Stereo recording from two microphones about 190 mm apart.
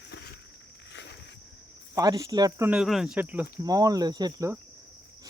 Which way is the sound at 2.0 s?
20° right (ahead or behind).